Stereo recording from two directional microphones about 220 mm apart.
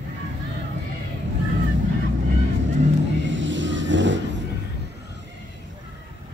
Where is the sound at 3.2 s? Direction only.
55° right (ahead or behind).